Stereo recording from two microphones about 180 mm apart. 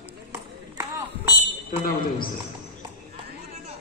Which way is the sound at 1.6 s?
50° left (ahead or behind).